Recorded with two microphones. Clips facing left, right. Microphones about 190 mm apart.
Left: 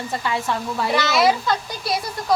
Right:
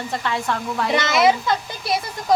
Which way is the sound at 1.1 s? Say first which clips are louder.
Right 2 dB; 20° right (ahead or behind).